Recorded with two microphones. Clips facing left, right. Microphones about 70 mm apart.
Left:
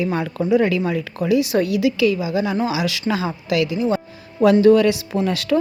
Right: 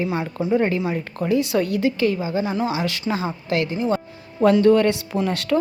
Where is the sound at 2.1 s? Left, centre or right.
Right.